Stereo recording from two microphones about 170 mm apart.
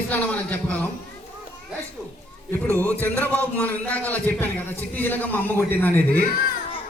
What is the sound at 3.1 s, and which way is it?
A man's voice, 10° left (ahead or behind).